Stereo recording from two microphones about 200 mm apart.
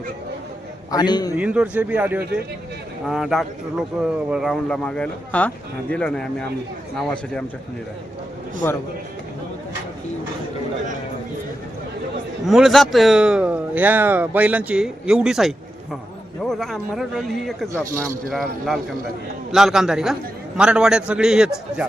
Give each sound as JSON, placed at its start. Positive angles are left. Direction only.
{"t": 0.9, "sound": "a man's voice", "side_deg": 20}
{"t": 1.4, "sound": "speech", "side_deg": -5}
{"t": 12.5, "sound": "speech", "side_deg": 0}